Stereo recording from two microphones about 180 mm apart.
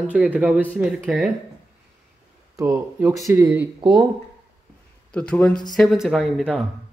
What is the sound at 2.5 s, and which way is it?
Speech, 15° right (ahead or behind).